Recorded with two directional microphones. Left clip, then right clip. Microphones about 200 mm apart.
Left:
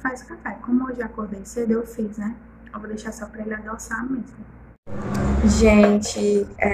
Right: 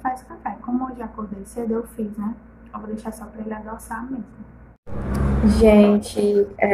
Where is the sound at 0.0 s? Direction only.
5° right (ahead or behind).